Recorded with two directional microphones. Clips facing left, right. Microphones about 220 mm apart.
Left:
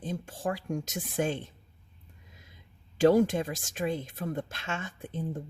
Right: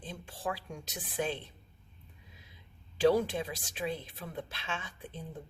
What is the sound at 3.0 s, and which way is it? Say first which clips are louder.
Speech: left 5 dB; 45° left (ahead or behind).